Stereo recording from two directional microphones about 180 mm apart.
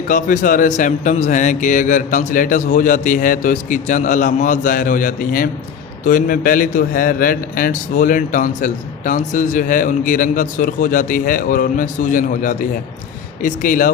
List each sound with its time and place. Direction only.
0.1 s a man's voice: 45° left (ahead or behind)